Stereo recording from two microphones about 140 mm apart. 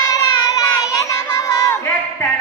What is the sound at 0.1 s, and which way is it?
Child singing, 25° left (ahead or behind).